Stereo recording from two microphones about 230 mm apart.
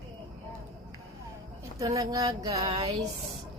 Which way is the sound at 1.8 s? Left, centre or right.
Centre.